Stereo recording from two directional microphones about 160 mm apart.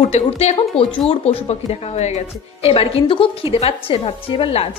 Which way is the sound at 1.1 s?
40° left (ahead or behind).